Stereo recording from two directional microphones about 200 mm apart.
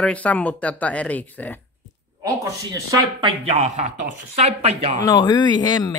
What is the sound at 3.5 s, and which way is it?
Speech, 35° right (ahead or behind).